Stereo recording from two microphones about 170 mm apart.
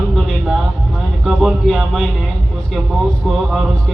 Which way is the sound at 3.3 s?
Centre (ahead or behind).